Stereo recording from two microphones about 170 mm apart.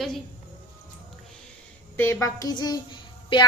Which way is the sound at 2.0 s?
15° left (ahead or behind).